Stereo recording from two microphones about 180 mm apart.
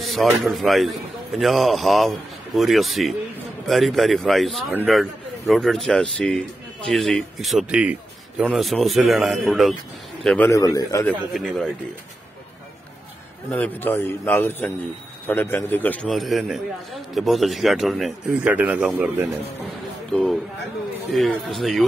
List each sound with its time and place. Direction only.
0.0 s a man's voice: centre (ahead or behind); by 11.1 s 20° left (ahead or behind)
11.1 s a man's voice: centre (ahead or behind)
13.5 s a man's voice: 10° left (ahead or behind); by 19.2 s 10° right (ahead or behind)
20.1 s a sound: centre (ahead or behind)
21.1 s a man's voice: centre (ahead or behind)